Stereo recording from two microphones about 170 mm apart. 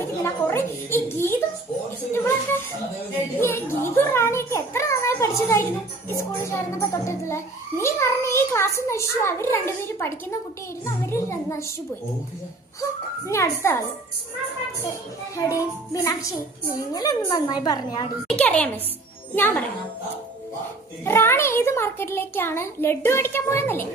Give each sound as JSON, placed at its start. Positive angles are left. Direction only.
{"t": 0.5, "sound": "music", "side_deg": 15}
{"t": 3.4, "sound": "children playing", "side_deg": 15}
{"t": 6.1, "sound": "a child's voice", "side_deg": 15}
{"t": 13.2, "sound": "a child's voice", "side_deg": 15}
{"t": 15.4, "sound": "a woman's voice", "side_deg": 20}
{"t": 18.3, "sound": "a child's voice", "side_deg": 5}
{"t": 21.0, "sound": "a child's voice", "side_deg": 15}